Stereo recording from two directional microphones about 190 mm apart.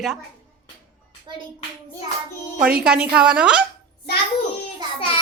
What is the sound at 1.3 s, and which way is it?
Speech, 25° right (ahead or behind).